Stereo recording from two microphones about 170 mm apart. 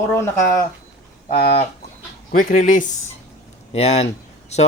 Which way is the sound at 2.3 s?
50° left (ahead or behind).